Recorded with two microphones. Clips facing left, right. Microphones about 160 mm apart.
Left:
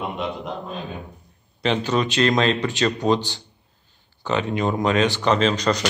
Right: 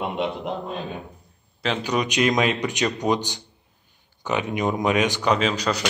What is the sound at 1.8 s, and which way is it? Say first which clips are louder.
A man's voice: even; 15° right (ahead or behind).